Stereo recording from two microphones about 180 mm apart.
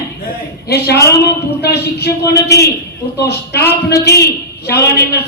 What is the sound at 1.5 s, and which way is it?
A man's voice, 65° left (ahead or behind).